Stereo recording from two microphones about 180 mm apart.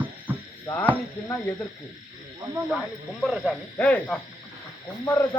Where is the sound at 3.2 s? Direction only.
Centre (ahead or behind).